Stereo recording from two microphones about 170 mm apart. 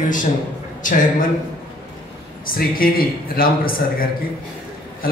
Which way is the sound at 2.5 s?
55° left (ahead or behind).